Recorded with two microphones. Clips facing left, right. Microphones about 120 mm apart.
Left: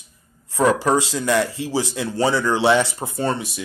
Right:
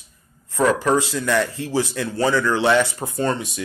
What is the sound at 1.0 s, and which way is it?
Speech, 20° left (ahead or behind).